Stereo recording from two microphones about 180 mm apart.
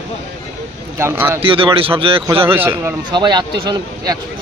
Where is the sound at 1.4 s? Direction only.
30° right (ahead or behind).